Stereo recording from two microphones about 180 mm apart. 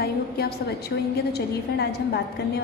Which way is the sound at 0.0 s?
60° left (ahead or behind).